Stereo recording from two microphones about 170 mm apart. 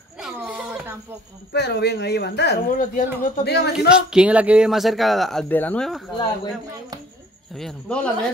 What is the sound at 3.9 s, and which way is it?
Speech, 5° right (ahead or behind).